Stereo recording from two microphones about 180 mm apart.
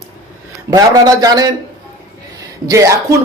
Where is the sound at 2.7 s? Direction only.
15° right (ahead or behind).